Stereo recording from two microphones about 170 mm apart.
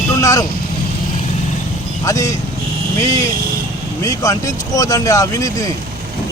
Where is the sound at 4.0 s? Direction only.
20° left (ahead or behind).